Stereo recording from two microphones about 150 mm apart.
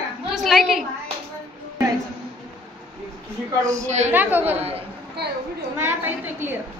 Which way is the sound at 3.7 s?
50° right (ahead or behind).